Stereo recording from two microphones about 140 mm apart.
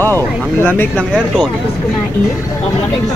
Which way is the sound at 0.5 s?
15° left (ahead or behind).